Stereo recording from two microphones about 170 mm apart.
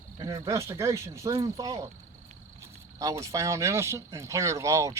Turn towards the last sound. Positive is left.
turn(degrees=-20)  # may be behind; listen again after turning